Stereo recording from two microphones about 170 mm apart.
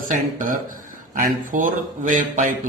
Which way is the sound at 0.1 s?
50° right (ahead or behind).